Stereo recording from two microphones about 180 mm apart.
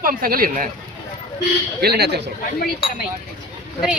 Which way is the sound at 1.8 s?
60° right (ahead or behind).